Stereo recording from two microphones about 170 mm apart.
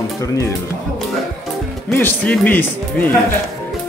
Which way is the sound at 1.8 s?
10° left (ahead or behind).